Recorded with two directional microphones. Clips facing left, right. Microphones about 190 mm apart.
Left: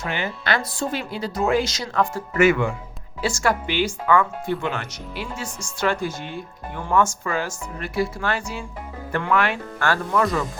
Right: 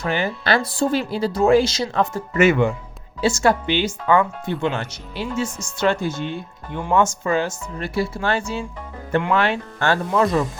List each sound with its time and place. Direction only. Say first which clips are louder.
0.0 s speech: right 5 dB; 35° right (ahead or behind)